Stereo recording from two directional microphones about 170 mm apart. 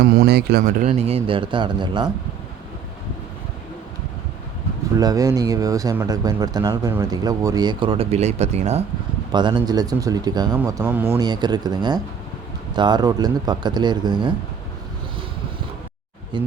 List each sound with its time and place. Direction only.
0.0 s speech: 70° right (ahead or behind)
0.6 s speech: 50° right (ahead or behind)
1.0 s speech: 35° right (ahead or behind)
4.9 s speech: 20° right (ahead or behind); by 8.8 s 40° right (ahead or behind)
9.3 s speech: 25° right (ahead or behind)
11.2 s speech: 25° right (ahead or behind)
16.3 s speech: 25° right (ahead or behind)